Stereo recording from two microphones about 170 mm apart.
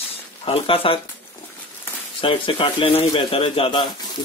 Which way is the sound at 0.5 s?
30° left (ahead or behind).